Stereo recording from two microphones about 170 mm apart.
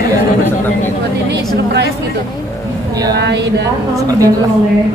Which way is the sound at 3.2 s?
90° right.